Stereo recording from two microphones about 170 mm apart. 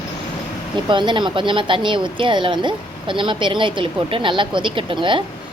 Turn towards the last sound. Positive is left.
turn(degrees=-30)  # may be behind; listen again after turning